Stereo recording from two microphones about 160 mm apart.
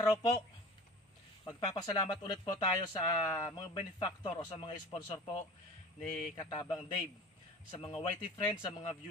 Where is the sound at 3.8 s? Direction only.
30° left (ahead or behind).